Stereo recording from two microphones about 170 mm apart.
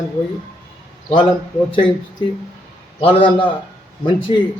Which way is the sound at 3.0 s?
30° left (ahead or behind).